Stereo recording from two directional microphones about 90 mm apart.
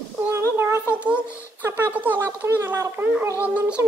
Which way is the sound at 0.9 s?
15° right (ahead or behind).